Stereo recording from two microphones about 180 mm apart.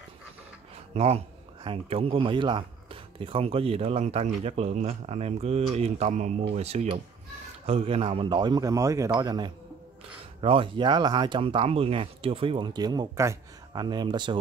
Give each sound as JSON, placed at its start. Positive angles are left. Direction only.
{"t": 0.9, "sound": "speech", "side_deg": -35}